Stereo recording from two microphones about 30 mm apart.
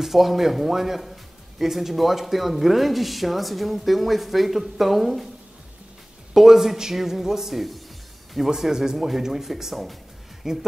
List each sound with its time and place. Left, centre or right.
0.0 s speech: centre
6.3 s speech: centre